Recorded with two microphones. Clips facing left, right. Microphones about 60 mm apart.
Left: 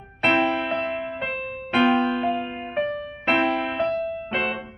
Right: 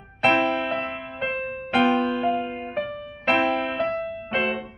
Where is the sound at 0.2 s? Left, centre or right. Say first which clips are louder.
Even; centre.